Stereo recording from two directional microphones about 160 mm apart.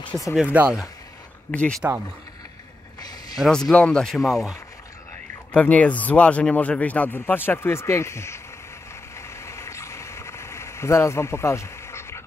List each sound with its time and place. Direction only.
0.4 s speech: 10° right (ahead or behind)
1.5 s speech: 10° left (ahead or behind)
3.3 s speech: centre (ahead or behind); by 8.4 s 15° left (ahead or behind)
9.1 s a sound: 15° left (ahead or behind)